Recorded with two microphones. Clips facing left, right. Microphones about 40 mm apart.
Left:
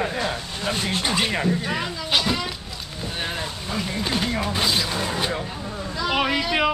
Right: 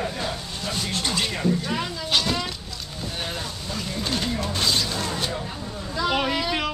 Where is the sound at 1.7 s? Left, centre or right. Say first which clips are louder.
Left 1 dB; centre.